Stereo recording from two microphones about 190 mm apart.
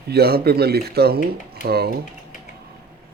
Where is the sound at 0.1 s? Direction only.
55° right (ahead or behind).